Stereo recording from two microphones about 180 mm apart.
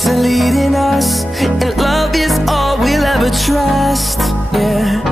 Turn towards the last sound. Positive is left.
turn(degrees=0)  # may be behind; listen again after turning